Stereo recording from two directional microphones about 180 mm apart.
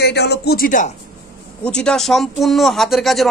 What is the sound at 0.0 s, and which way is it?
Speech, 65° left (ahead or behind).